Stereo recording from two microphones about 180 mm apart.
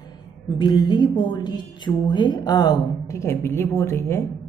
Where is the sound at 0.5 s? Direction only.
25° left (ahead or behind).